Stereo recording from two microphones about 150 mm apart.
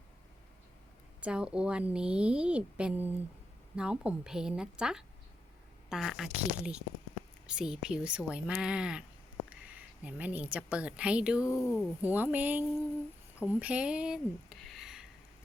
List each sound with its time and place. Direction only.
1.2 s a woman's voice: 5° right (ahead or behind)
11.4 s speech: 20° left (ahead or behind)
12.0 s a woman's voice: 10° right (ahead or behind)